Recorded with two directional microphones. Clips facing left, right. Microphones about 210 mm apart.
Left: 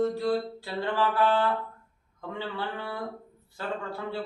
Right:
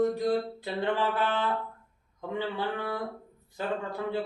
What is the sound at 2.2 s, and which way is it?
A man's voice, 15° right (ahead or behind).